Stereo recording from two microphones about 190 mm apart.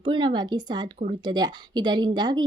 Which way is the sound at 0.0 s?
25° right (ahead or behind).